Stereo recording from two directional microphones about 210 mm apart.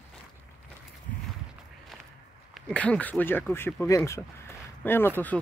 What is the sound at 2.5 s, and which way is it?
Speech, 5° left (ahead or behind).